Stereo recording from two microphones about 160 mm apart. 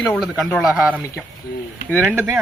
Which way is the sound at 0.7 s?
10° right (ahead or behind).